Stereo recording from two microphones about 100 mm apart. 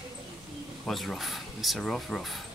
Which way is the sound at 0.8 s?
Centre (ahead or behind).